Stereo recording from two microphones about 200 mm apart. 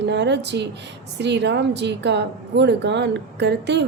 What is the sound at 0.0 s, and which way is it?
Speech, 60° right (ahead or behind).